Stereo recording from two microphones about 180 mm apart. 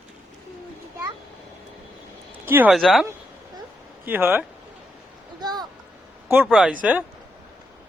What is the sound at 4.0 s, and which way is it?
Speech, 10° right (ahead or behind).